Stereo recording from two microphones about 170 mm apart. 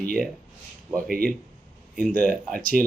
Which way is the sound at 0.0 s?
55° right (ahead or behind).